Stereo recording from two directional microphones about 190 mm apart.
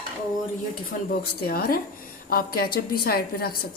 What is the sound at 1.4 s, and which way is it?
Speech, 55° left (ahead or behind).